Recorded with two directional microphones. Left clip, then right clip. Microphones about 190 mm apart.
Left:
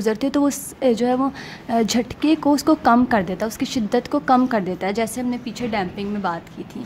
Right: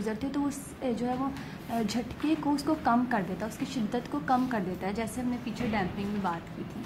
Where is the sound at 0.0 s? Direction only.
50° left (ahead or behind).